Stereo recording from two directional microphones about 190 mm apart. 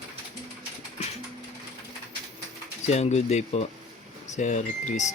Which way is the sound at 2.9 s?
35° left (ahead or behind).